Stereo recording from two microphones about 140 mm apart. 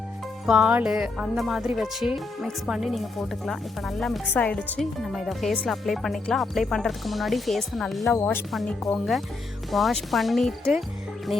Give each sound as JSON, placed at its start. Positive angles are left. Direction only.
{"t": 0.4, "sound": "speech", "side_deg": -5}
{"t": 8.1, "sound": "speech", "side_deg": 15}
{"t": 8.5, "sound": "speech", "side_deg": 5}